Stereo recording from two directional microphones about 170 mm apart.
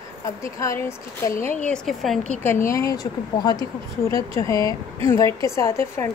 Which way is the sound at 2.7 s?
20° left (ahead or behind).